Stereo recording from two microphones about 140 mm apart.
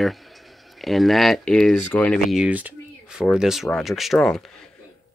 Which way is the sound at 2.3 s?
10° right (ahead or behind).